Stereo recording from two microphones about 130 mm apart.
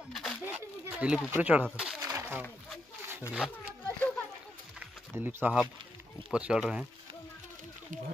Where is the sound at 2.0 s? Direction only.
30° right (ahead or behind).